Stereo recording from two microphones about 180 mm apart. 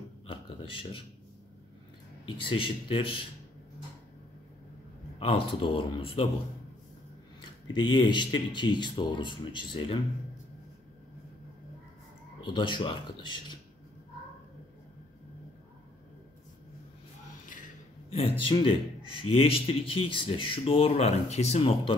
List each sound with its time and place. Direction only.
0.3 s a sound: 30° left (ahead or behind)
2.4 s speech: 30° left (ahead or behind)
5.2 s speech: 30° left (ahead or behind)
7.6 s speech: 25° left (ahead or behind)
12.4 s speech: 25° left (ahead or behind)
18.4 s speech: 30° left (ahead or behind)